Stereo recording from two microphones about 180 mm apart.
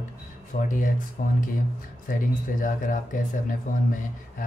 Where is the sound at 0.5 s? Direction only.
45° left (ahead or behind).